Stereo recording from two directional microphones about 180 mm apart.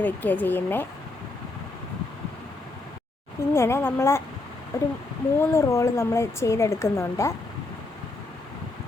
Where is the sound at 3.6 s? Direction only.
15° left (ahead or behind).